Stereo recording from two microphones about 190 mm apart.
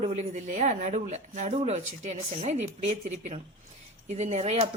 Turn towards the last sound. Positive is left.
turn(degrees=-35)  # may be behind; listen again after turning